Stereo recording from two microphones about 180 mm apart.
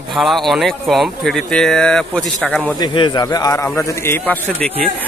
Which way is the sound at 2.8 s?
25° left (ahead or behind).